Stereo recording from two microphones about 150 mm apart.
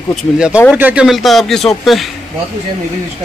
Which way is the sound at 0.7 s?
10° right (ahead or behind).